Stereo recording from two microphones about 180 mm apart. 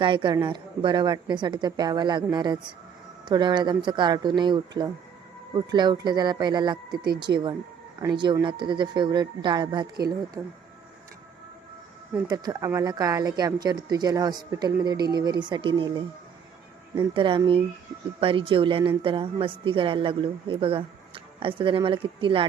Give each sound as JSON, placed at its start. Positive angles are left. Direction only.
{"t": 0.0, "sound": "speech", "side_deg": -25}
{"t": 12.3, "sound": "speech", "side_deg": -20}
{"t": 17.2, "sound": "speech", "side_deg": -25}